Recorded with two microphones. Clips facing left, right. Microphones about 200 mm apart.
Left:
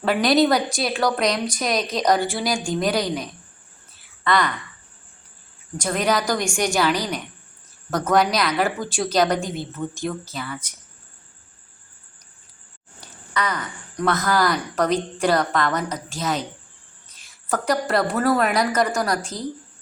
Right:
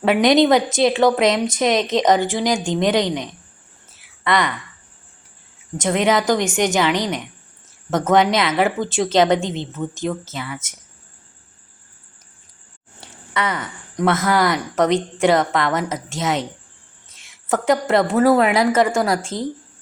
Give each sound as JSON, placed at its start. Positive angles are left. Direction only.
{"t": 0.0, "sound": "a woman's voice", "side_deg": -20}
{"t": 5.7, "sound": "a woman's voice", "side_deg": -20}
{"t": 13.3, "sound": "a woman's voice", "side_deg": -25}